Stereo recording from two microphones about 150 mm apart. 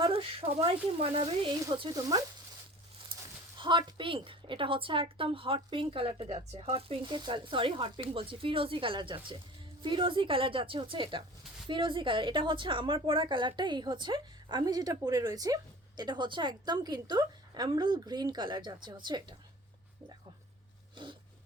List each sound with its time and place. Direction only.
0.0 s a woman's voice: 35° right (ahead or behind)
1.7 s a woman's voice: 30° right (ahead or behind)
3.6 s a woman's voice: 30° right (ahead or behind)
20.9 s a sound: 30° right (ahead or behind)